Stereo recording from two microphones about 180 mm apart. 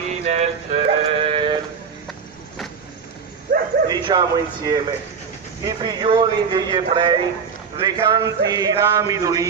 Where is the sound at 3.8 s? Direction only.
25° right (ahead or behind).